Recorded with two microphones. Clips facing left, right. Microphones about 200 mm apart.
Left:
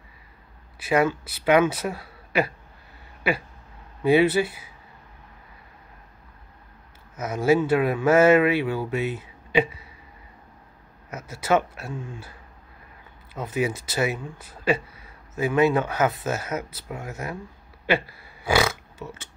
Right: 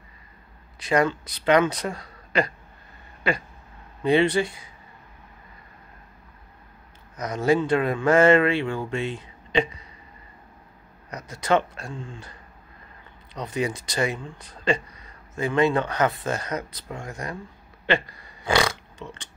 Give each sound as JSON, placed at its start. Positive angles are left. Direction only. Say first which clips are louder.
{"t": 0.7, "sound": "speech", "louder": "even", "side_deg": 5}
{"t": 4.0, "sound": "speech", "louder": "left 1 dB", "side_deg": 5}
{"t": 7.2, "sound": "speech", "louder": "left 1 dB", "side_deg": 5}
{"t": 11.1, "sound": "speech", "louder": "even", "side_deg": 5}